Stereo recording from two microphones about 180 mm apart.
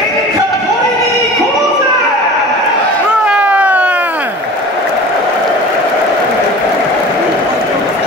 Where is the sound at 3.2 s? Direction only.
5° right (ahead or behind).